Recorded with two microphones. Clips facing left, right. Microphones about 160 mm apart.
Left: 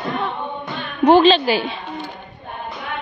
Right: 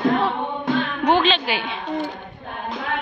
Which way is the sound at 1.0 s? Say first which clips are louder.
Left 10 dB; 35° left (ahead or behind).